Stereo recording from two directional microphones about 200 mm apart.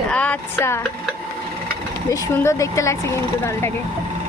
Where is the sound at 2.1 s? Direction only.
15° left (ahead or behind).